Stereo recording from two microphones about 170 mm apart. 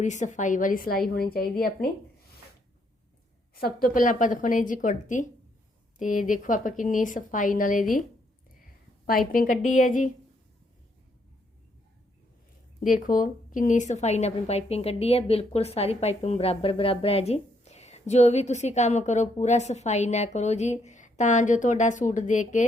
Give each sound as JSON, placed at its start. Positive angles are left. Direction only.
{"t": 0.0, "sound": "a woman's voice", "side_deg": 45}
{"t": 3.5, "sound": "a woman's voice", "side_deg": 60}
{"t": 9.0, "sound": "a woman's voice", "side_deg": 60}
{"t": 12.8, "sound": "a woman's voice", "side_deg": 55}